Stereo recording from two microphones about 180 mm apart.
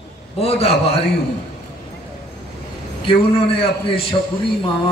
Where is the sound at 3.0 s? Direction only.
30° left (ahead or behind).